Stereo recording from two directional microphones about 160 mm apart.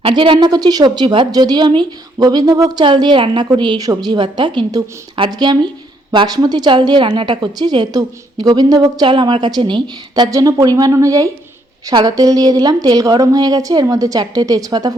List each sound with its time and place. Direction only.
0.0 s a woman's voice: 30° right (ahead or behind)